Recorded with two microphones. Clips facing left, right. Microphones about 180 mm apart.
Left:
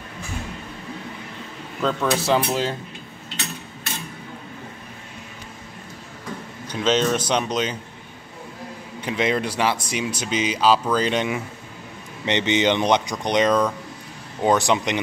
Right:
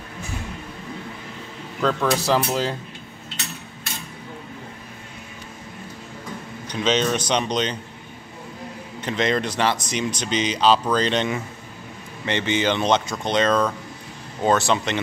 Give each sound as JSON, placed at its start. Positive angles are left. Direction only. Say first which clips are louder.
{"t": 1.8, "sound": "speech", "louder": "right 1 dB", "side_deg": 0}
{"t": 6.7, "sound": "speech", "louder": "left 1 dB", "side_deg": 5}
{"t": 9.0, "sound": "speech", "louder": "even", "side_deg": 10}
{"t": 12.3, "sound": "speech", "louder": "left 2 dB", "side_deg": 20}